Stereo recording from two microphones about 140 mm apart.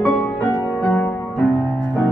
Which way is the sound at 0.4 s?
20° left (ahead or behind).